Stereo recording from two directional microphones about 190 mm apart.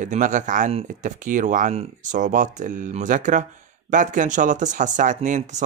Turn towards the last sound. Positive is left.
turn(degrees=-40)  # may be behind; listen again after turning